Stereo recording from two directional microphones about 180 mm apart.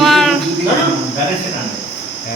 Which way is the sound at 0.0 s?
Centre (ahead or behind).